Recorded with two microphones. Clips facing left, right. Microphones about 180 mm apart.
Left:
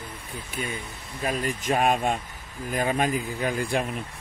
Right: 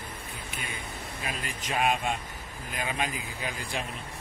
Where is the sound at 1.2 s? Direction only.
45° left (ahead or behind).